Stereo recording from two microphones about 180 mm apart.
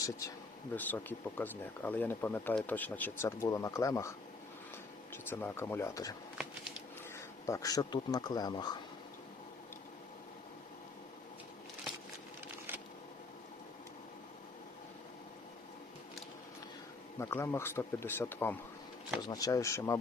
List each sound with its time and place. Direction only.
0.8 s speech: 10° left (ahead or behind)
5.1 s speech: 15° left (ahead or behind)
6.3 s a sound: 5° right (ahead or behind)
7.4 s speech: 20° left (ahead or behind)
17.2 s speech: 15° left (ahead or behind)